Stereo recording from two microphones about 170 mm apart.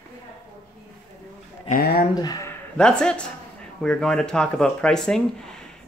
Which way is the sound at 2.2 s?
25° left (ahead or behind).